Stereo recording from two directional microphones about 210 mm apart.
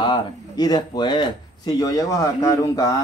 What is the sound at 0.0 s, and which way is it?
A man's voice, 20° left (ahead or behind).